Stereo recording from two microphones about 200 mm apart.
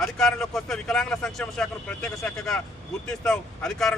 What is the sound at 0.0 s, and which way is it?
Speech, centre (ahead or behind).